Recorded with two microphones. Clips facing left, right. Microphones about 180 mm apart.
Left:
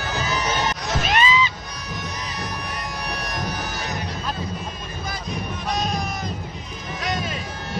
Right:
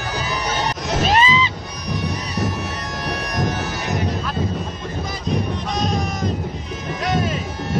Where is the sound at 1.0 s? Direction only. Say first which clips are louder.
Right 3 dB; 30° right (ahead or behind).